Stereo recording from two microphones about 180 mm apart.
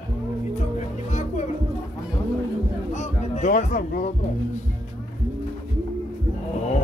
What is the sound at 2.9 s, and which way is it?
Music, 40° left (ahead or behind).